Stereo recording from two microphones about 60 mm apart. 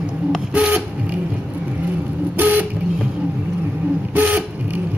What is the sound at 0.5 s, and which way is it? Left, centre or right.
Vehicle, right.